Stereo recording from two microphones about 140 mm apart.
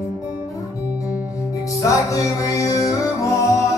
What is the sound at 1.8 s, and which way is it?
Music, 25° left (ahead or behind).